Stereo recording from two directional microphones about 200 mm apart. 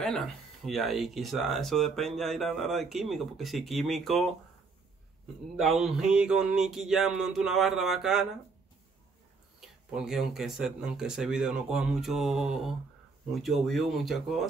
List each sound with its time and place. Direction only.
0.0 s speech: centre (ahead or behind)
5.6 s speech: centre (ahead or behind)
9.6 s speech: 5° right (ahead or behind)